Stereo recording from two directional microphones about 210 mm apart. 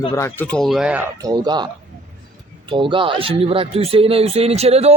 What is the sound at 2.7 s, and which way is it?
Speech, 25° right (ahead or behind).